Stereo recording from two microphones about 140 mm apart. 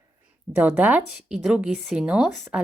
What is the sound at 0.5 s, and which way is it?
Speech, 10° right (ahead or behind).